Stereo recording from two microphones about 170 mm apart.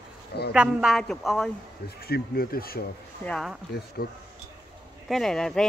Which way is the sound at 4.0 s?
65° left (ahead or behind).